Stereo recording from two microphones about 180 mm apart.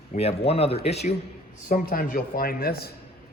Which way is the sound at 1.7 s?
55° left (ahead or behind).